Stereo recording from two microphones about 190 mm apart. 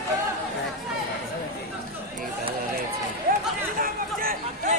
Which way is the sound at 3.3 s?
50° right (ahead or behind).